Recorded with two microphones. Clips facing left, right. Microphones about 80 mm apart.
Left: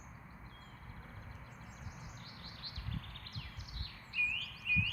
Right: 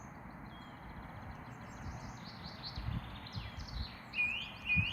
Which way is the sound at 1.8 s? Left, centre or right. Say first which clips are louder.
Right 4 dB; centre.